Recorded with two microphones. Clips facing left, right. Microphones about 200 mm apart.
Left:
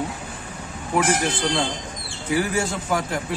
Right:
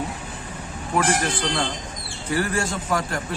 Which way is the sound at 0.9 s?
Centre (ahead or behind).